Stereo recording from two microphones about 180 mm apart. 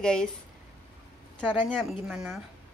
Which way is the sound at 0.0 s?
5° left (ahead or behind).